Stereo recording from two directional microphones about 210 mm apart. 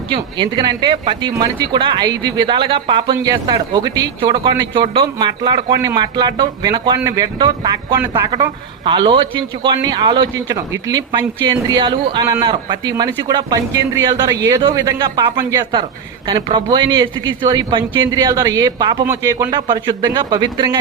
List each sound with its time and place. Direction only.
0.1 s speech: 25° right (ahead or behind)